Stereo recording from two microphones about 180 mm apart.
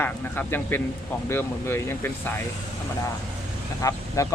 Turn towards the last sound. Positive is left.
turn(degrees=20)  # may be behind; listen again after turning